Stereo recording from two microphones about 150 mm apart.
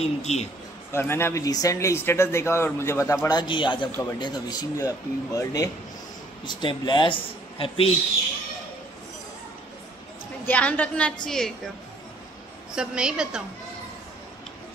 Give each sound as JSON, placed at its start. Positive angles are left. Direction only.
{"t": 0.0, "sound": "a man's voice", "side_deg": 45}
{"t": 0.9, "sound": "a man's voice", "side_deg": 15}
{"t": 10.4, "sound": "a woman's voice", "side_deg": 10}
{"t": 12.7, "sound": "a woman's voice", "side_deg": -5}